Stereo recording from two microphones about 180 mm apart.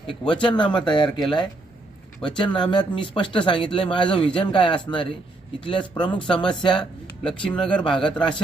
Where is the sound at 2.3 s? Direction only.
25° left (ahead or behind).